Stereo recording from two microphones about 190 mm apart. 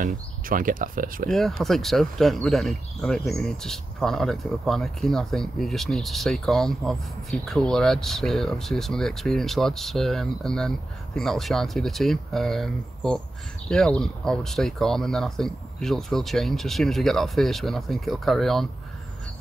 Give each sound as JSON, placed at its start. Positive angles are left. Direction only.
{"t": 0.0, "sound": "speech", "side_deg": -45}
{"t": 1.6, "sound": "speech", "side_deg": 0}